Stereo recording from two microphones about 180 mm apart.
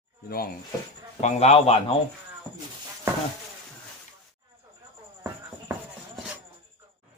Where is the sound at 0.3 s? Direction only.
55° left (ahead or behind).